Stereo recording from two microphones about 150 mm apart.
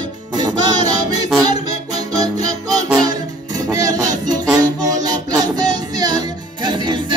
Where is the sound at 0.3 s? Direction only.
25° right (ahead or behind).